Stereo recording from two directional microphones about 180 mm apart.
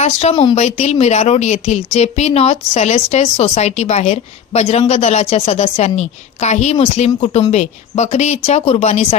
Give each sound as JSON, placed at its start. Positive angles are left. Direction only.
{"t": 0.0, "sound": "speech", "side_deg": 35}